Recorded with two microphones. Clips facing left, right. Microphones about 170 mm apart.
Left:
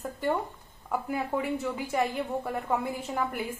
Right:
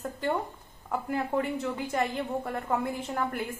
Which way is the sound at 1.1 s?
10° left (ahead or behind).